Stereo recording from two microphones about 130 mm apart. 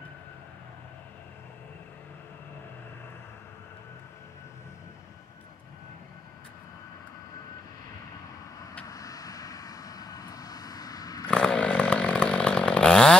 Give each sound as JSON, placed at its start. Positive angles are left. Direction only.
{"t": 8.8, "sound": "vehicle", "side_deg": 30}
{"t": 11.2, "sound": "chainsaw", "side_deg": 10}